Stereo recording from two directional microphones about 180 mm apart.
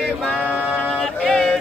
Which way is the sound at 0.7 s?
5° left (ahead or behind).